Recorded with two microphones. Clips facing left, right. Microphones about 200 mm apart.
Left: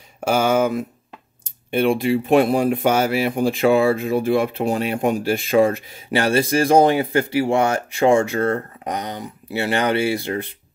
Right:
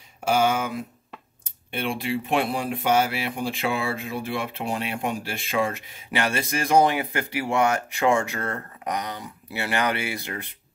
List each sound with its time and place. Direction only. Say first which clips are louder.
0.2 s speech: left 5 dB; 45° left (ahead or behind)